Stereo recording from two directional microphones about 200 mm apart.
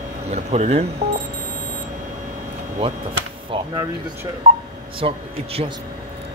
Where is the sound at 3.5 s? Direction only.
15° right (ahead or behind).